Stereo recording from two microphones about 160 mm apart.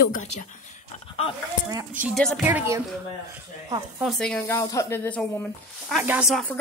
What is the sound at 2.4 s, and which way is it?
Speech, 10° right (ahead or behind).